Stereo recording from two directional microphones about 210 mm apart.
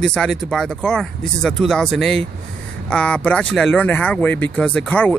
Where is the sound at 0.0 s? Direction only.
5° left (ahead or behind).